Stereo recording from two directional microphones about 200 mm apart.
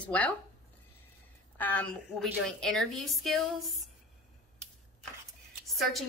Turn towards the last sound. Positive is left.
turn(degrees=0)  # may be behind; listen again after turning